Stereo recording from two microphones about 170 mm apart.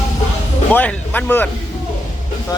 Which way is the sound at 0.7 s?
10° left (ahead or behind).